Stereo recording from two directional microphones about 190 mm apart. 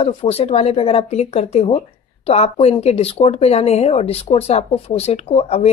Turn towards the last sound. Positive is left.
turn(degrees=30)  # may be behind; listen again after turning